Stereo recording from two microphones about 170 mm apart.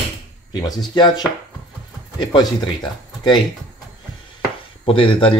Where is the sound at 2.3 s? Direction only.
25° left (ahead or behind).